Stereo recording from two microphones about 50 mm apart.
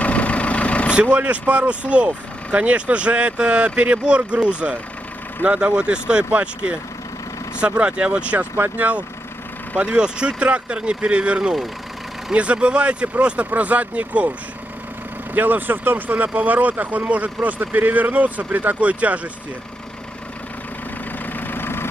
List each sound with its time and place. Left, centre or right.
0.0 s vehicle: left
1.1 s speech: right
9.8 s speech: centre
15.3 s speech: right
21.3 s vehicle: left